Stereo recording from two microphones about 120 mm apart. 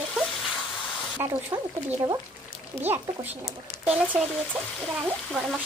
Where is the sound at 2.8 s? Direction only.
15° right (ahead or behind).